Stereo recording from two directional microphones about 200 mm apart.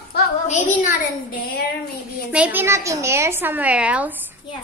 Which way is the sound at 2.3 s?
5° right (ahead or behind).